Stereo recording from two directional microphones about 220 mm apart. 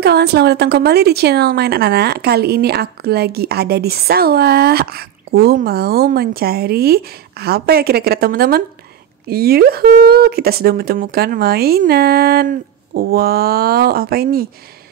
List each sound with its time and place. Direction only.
0.0 s speech: 50° right (ahead or behind)